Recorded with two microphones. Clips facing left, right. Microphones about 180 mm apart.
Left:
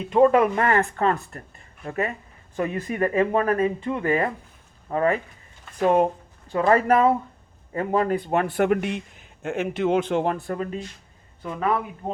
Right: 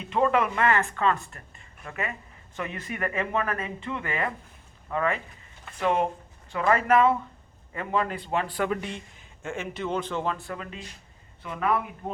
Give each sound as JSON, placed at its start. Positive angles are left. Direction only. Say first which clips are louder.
{"t": 0.1, "sound": "a man's voice", "louder": "left 7 dB", "side_deg": 45}